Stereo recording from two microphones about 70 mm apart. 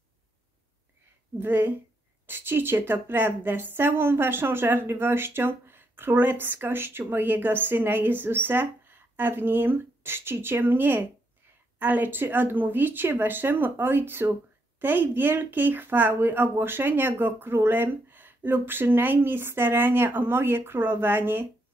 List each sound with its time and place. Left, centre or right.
1.4 s speech: right